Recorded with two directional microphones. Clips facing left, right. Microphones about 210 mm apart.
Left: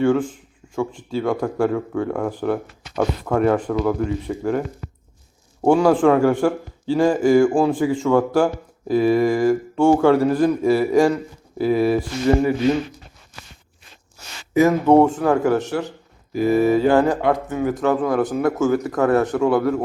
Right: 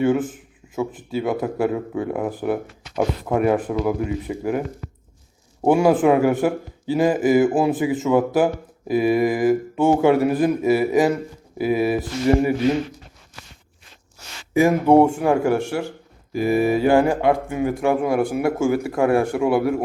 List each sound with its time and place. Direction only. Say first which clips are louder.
0.1 s speech: left 1 dB; 5° right (ahead or behind)
1.7 s a man's voice: left 2 dB; 20° right (ahead or behind)
2.3 s speech: left 1 dB; 5° right (ahead or behind)
2.9 s a man's voice: left 1 dB; 20° right (ahead or behind)
5.6 s speech: left 1 dB; 15° right (ahead or behind)
5.9 s a man's voice: left 1 dB; 5° right (ahead or behind)
14.5 s speech: left 1 dB; 10° right (ahead or behind)